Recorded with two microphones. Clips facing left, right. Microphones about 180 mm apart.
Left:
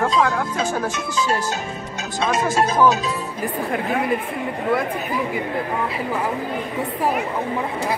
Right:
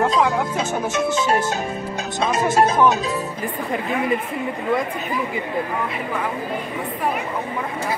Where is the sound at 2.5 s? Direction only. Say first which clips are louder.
Right 3 dB; 25° right (ahead or behind).